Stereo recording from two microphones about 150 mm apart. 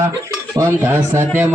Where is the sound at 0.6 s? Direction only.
15° right (ahead or behind).